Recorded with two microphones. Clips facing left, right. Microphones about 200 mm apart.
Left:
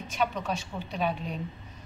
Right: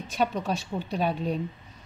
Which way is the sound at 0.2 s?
40° right (ahead or behind).